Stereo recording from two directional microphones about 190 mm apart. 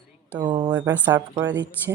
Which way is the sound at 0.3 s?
25° right (ahead or behind).